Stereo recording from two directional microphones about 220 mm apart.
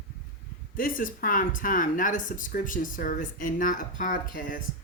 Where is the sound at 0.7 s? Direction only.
40° left (ahead or behind).